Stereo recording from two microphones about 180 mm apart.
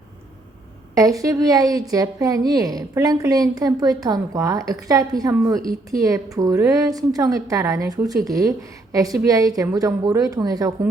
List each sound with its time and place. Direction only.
0.9 s a woman's voice: 20° right (ahead or behind)